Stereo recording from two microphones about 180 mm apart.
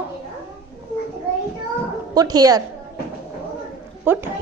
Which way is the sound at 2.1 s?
20° right (ahead or behind).